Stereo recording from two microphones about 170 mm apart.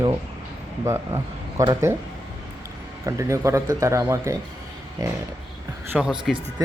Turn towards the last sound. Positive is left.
turn(degrees=-5)  # may be behind; listen again after turning